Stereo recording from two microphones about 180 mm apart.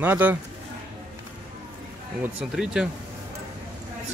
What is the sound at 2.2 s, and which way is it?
Speech, 5° right (ahead or behind).